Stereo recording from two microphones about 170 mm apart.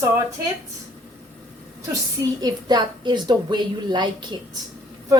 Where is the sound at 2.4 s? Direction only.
25° right (ahead or behind).